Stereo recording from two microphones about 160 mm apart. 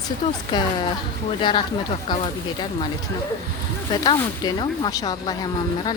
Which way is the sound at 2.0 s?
35° left (ahead or behind).